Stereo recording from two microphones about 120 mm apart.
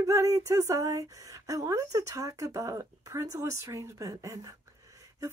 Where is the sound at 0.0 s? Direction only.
25° right (ahead or behind).